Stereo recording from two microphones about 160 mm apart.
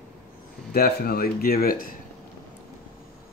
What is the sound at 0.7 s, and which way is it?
Speech, 75° left (ahead or behind).